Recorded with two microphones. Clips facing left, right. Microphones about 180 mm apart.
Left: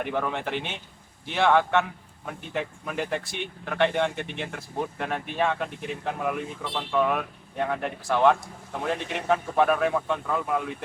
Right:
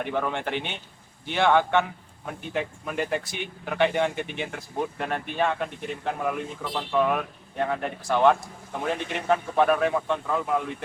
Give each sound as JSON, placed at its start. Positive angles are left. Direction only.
{"t": 0.0, "sound": "a man's voice", "side_deg": 0}